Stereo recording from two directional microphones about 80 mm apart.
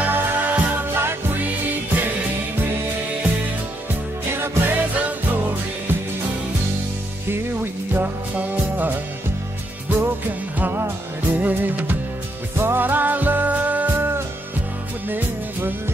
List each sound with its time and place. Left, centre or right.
0.0 s music: right
4.3 s music: right
7.9 s music: right